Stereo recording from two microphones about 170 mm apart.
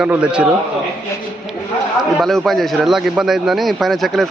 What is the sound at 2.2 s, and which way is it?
A man's voice, centre (ahead or behind).